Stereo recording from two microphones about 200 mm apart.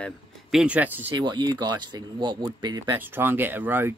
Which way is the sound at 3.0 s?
10° right (ahead or behind).